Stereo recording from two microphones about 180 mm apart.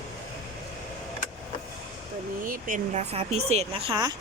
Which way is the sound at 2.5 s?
45° right (ahead or behind).